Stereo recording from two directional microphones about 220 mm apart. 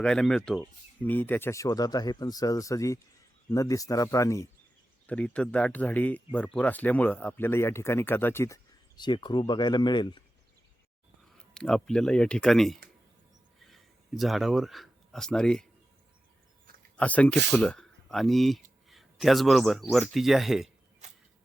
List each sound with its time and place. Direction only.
0.0 s speech: 5° left (ahead or behind); by 10.2 s 20° left (ahead or behind)
11.3 s a man's voice: 5° left (ahead or behind)
17.0 s a man's voice: 5° left (ahead or behind)